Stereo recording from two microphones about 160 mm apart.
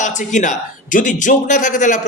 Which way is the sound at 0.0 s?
50° left (ahead or behind).